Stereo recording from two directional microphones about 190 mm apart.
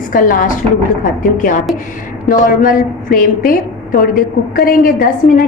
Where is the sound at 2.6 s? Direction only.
45° left (ahead or behind).